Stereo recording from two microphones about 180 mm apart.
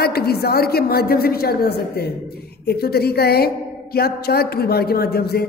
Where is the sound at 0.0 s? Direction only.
60° left (ahead or behind).